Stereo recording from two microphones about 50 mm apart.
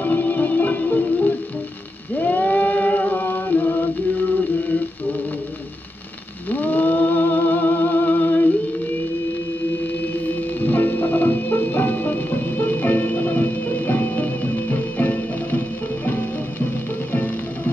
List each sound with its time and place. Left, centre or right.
0.0 s music: left
2.1 s a sound: left
6.5 s music: left
10.2 s music: left